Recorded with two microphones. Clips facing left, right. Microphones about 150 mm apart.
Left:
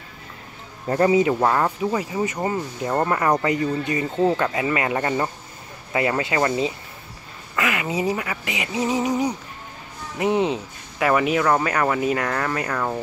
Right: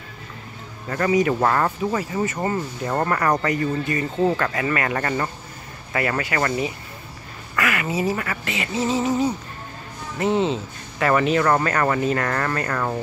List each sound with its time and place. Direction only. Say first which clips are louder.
0.8 s speech: left 2 dB; 25° left (ahead or behind)
1.3 s speech: even; 10° left (ahead or behind)